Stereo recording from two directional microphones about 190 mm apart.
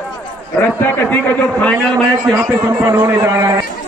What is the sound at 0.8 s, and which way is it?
Speech, 10° left (ahead or behind).